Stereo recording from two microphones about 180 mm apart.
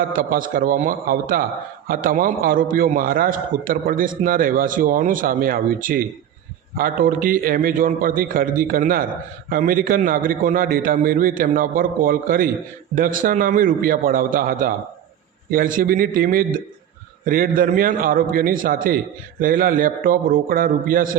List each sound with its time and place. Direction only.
0.1 s a man's voice: 50° right (ahead or behind)